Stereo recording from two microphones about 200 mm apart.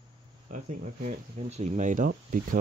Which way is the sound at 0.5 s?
40° right (ahead or behind).